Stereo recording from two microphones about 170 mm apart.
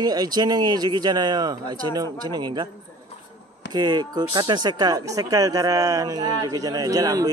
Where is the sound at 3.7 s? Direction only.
25° right (ahead or behind).